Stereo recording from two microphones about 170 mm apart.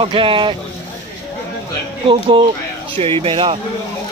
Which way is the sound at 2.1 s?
30° right (ahead or behind).